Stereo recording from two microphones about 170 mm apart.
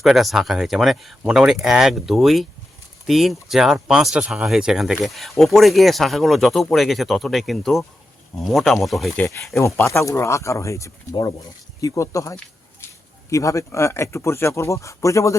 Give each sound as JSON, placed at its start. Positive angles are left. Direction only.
{"t": 0.0, "sound": "speech", "side_deg": 0}
{"t": 9.6, "sound": "speech", "side_deg": 15}